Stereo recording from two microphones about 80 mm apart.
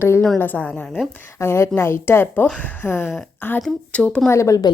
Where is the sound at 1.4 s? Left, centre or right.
Left.